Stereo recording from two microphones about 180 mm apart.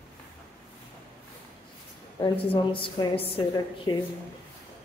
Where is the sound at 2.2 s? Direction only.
30° left (ahead or behind).